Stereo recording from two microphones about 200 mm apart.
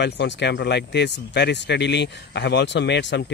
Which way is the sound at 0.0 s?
60° left (ahead or behind).